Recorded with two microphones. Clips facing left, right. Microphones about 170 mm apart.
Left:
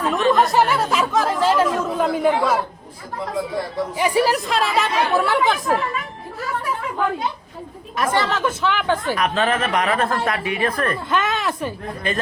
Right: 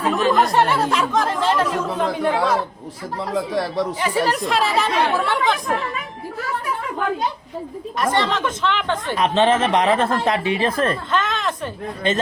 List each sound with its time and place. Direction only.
0.3 s speech: centre (ahead or behind)
3.2 s speech: 85° right
3.9 s speech: 10° left (ahead or behind)
7.9 s speech: 5° left (ahead or behind)
9.1 s speech: 25° right (ahead or behind)
11.1 s speech: 10° left (ahead or behind)